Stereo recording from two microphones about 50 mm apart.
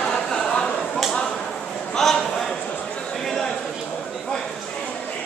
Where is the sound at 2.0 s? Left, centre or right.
Centre.